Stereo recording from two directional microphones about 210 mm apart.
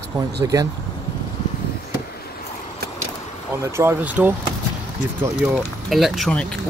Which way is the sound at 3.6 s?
10° right (ahead or behind).